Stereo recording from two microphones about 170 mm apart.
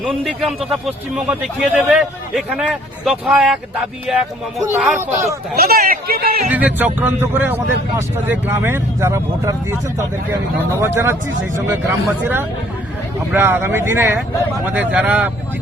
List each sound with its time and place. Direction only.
0.3 s a man's voice: centre (ahead or behind)
4.9 s speech: 15° right (ahead or behind)
5.5 s speech: 65° right (ahead or behind)
6.5 s speech: 10° right (ahead or behind)